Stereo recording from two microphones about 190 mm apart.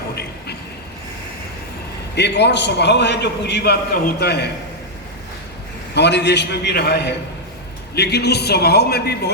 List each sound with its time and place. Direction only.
2.1 s a man's voice: 65° left (ahead or behind)
5.9 s a man's voice: 65° left (ahead or behind)